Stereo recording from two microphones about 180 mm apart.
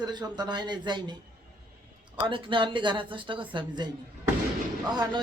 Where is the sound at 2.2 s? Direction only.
30° right (ahead or behind).